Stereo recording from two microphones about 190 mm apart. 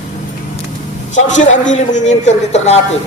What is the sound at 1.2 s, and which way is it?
A man's voice, 40° left (ahead or behind).